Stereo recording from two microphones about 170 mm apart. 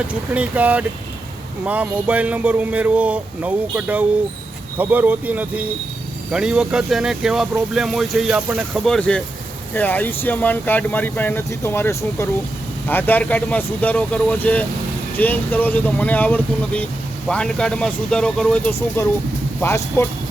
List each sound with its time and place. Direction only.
0.1 s speech: 10° right (ahead or behind); by 20.1 s 15° left (ahead or behind)